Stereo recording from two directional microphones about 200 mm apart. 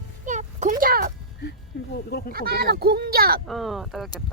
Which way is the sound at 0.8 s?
45° right (ahead or behind).